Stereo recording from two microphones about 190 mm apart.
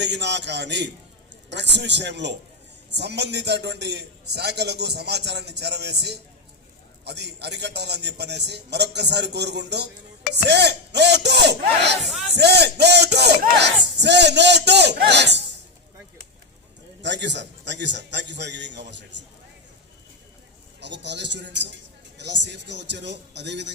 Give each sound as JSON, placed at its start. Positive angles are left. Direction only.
{"t": 0.0, "sound": "a man's voice", "side_deg": -65}
{"t": 12.0, "sound": "speech", "side_deg": 0}
{"t": 12.4, "sound": "a man's voice", "side_deg": -60}
{"t": 17.0, "sound": "a man's voice", "side_deg": -65}
{"t": 20.8, "sound": "a man's voice", "side_deg": -65}